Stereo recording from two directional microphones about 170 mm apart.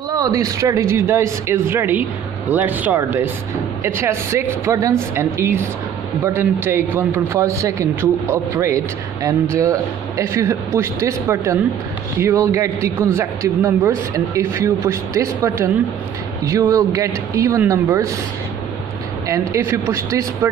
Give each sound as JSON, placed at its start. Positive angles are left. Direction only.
{"t": 0.1, "sound": "a man's voice", "side_deg": -20}
{"t": 19.5, "sound": "a man's voice", "side_deg": -15}